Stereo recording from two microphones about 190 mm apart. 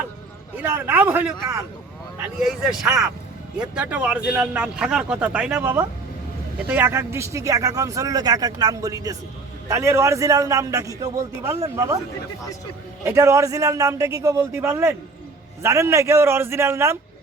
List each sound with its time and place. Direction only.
0.5 s a man's voice: 10° right (ahead or behind)
13.1 s speech: 15° right (ahead or behind)